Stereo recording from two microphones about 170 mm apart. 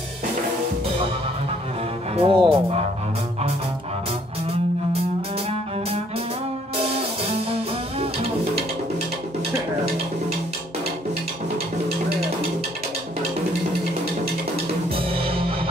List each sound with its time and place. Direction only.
2.1 s speech: 30° right (ahead or behind)
15.0 s music: 35° right (ahead or behind)